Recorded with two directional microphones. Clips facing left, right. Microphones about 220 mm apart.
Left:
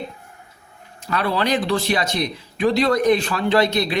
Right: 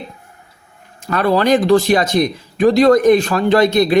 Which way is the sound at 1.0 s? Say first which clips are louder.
Right 7 dB; 45° right (ahead or behind).